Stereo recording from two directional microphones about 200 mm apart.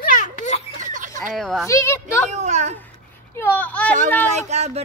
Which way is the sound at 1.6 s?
15° left (ahead or behind).